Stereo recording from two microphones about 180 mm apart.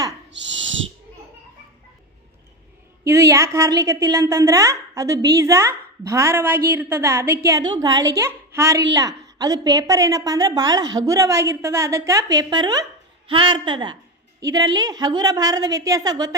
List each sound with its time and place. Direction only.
0.3 s owl: 90° right
3.0 s a woman's voice: 15° right (ahead or behind)